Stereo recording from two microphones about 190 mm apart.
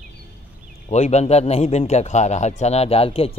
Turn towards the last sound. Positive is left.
turn(degrees=30)  # may be behind; listen again after turning